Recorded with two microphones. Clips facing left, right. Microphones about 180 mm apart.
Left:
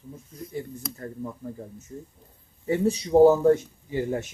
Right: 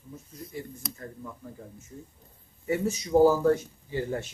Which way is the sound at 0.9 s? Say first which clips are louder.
Left 6 dB; 35° left (ahead or behind).